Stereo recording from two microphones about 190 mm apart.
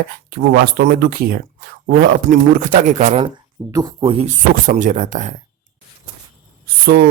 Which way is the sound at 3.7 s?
25° right (ahead or behind).